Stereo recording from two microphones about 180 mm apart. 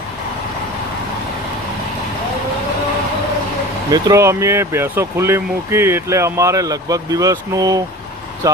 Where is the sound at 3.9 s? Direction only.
20° right (ahead or behind).